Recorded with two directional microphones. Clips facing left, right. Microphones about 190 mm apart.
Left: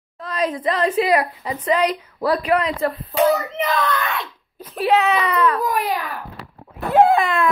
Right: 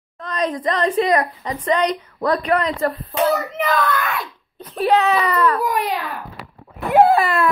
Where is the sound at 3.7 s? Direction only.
25° left (ahead or behind).